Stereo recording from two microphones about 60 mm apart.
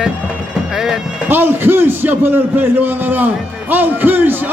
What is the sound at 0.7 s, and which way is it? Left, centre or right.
Bagpipes, centre.